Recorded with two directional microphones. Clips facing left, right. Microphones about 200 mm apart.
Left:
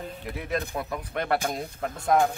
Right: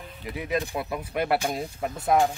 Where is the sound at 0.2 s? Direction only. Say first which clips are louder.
Right 3 dB; centre (ahead or behind).